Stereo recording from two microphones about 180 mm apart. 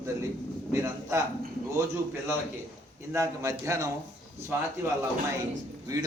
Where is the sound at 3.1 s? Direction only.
15° right (ahead or behind).